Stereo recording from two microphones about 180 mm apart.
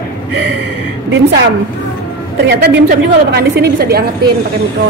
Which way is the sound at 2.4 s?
70° right (ahead or behind).